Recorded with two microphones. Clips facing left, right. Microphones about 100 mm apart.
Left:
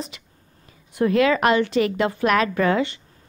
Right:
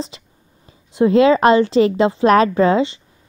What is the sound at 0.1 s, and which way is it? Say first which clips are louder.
A woman's voice: right 4 dB; 30° right (ahead or behind).